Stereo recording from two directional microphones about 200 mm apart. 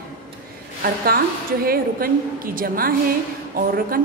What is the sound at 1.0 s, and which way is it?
A woman's voice, 50° right (ahead or behind).